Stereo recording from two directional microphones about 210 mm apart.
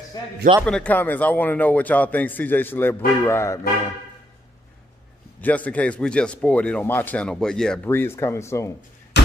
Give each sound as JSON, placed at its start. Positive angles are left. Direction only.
{"t": 0.2, "sound": "a man's voice", "side_deg": 20}
{"t": 0.7, "sound": "speech", "side_deg": 5}
{"t": 5.4, "sound": "speech", "side_deg": 5}
{"t": 9.1, "sound": "a sound", "side_deg": 55}